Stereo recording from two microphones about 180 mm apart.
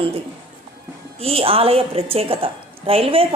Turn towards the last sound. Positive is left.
turn(degrees=-30)  # may be behind; listen again after turning